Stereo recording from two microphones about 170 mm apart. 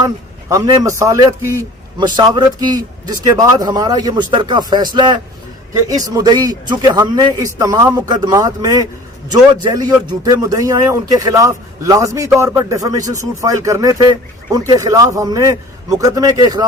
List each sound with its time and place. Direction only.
0.0 s a man's voice: 20° right (ahead or behind)